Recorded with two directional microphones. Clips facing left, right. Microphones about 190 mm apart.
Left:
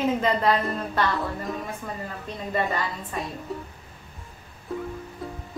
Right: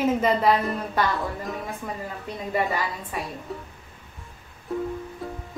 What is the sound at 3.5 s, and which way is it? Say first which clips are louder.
Speech: left 3 dB; centre (ahead or behind).